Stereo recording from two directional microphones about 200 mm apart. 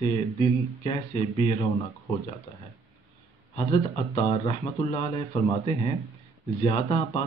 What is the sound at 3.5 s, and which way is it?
Speech, 25° left (ahead or behind).